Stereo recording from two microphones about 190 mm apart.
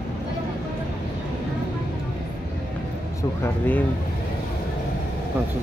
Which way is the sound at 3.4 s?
10° left (ahead or behind).